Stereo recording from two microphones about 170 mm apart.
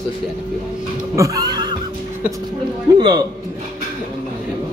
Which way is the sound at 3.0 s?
25° right (ahead or behind).